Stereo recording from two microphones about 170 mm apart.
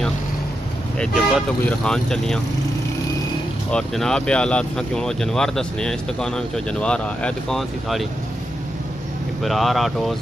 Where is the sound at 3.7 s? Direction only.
5° left (ahead or behind).